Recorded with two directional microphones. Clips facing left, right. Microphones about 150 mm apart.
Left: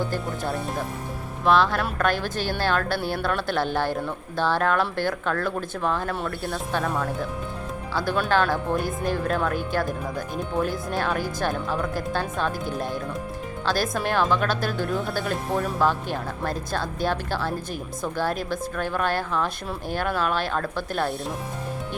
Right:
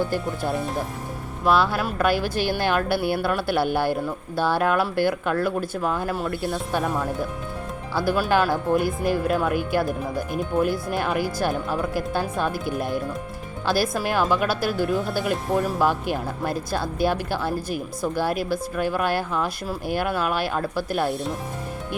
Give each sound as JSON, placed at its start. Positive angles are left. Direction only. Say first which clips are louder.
{"t": 0.1, "sound": "speech", "louder": "right 3 dB", "side_deg": 0}